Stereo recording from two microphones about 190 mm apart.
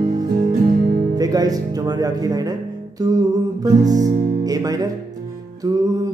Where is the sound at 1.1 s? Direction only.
20° right (ahead or behind).